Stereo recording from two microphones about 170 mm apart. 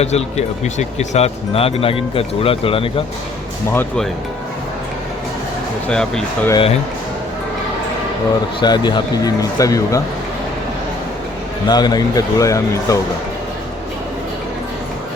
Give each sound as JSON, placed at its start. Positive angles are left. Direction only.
{"t": 0.0, "sound": "speech", "side_deg": 40}
{"t": 3.7, "sound": "speech", "side_deg": 10}
{"t": 5.9, "sound": "speech", "side_deg": 5}
{"t": 8.6, "sound": "speech", "side_deg": 25}
{"t": 11.7, "sound": "speech", "side_deg": 25}